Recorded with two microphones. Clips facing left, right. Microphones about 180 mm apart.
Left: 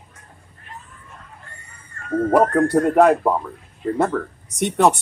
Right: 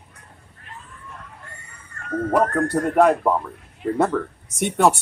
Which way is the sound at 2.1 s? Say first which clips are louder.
Left 4 dB; 25° left (ahead or behind).